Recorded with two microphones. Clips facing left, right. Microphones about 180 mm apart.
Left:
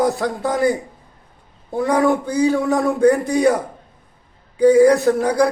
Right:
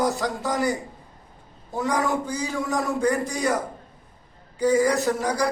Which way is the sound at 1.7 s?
60° left (ahead or behind).